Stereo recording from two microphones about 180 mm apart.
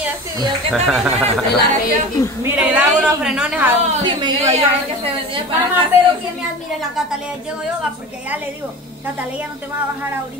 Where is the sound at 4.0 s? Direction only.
25° right (ahead or behind).